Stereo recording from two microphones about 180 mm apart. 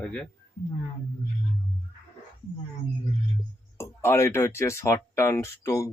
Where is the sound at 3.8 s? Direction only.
15° left (ahead or behind).